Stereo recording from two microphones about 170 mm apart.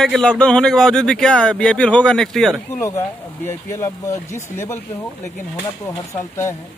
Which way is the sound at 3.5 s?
15° left (ahead or behind).